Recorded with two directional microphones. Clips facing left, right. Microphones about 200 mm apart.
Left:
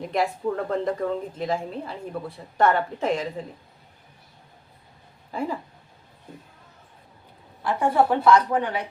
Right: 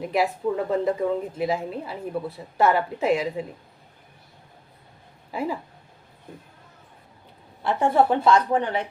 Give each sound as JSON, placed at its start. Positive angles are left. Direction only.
{"t": 0.1, "sound": "a woman's voice", "side_deg": -5}
{"t": 5.3, "sound": "speech", "side_deg": -10}
{"t": 7.6, "sound": "a woman's voice", "side_deg": -25}